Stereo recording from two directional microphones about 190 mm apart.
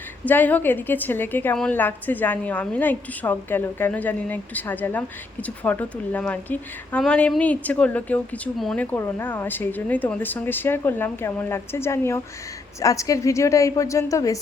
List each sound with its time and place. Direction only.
0.3 s a woman's voice: 10° left (ahead or behind)